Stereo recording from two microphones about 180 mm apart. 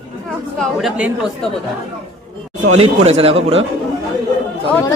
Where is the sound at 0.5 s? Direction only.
Centre (ahead or behind).